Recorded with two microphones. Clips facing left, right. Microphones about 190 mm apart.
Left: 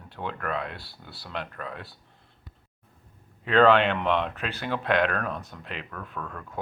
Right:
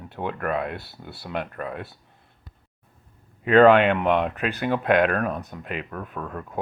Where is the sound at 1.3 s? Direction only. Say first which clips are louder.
Right 5 dB; 50° right (ahead or behind).